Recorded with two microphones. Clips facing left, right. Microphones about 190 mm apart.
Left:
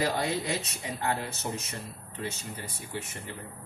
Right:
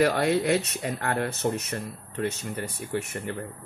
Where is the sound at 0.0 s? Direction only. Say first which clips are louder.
Right 7 dB; 65° right (ahead or behind).